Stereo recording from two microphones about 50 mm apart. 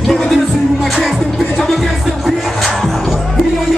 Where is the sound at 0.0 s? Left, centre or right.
Centre.